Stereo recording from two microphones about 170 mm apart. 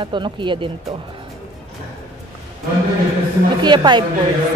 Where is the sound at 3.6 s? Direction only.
25° right (ahead or behind).